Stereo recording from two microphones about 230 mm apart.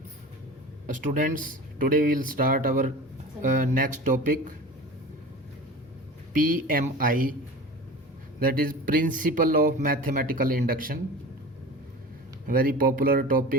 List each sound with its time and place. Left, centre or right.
0.9 s speech: right
6.3 s speech: right
8.4 s speech: right
12.5 s speech: right